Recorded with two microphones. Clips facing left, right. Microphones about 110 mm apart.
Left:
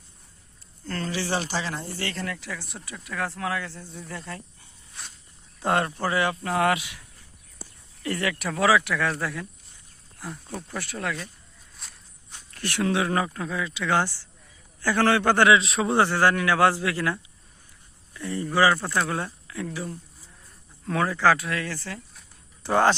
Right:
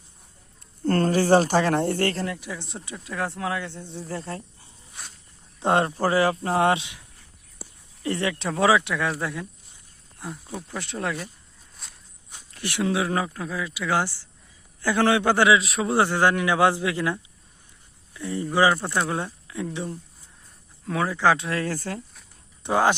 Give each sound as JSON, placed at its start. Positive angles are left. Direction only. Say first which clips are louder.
{"t": 0.9, "sound": "speech", "louder": "right 10 dB", "side_deg": -50}
{"t": 2.2, "sound": "speech", "louder": "right 2 dB", "side_deg": -20}
{"t": 10.8, "sound": "speech", "louder": "right 4 dB", "side_deg": -25}
{"t": 11.8, "sound": "walk", "louder": "even", "side_deg": 0}
{"t": 12.3, "sound": "speech", "louder": "even", "side_deg": -15}
{"t": 16.0, "sound": "speech", "louder": "right 1 dB", "side_deg": -15}
{"t": 20.8, "sound": "speech", "louder": "even", "side_deg": -10}
{"t": 21.7, "sound": "speech", "louder": "right 5 dB", "side_deg": -45}
{"t": 22.6, "sound": "speech", "louder": "even", "side_deg": -10}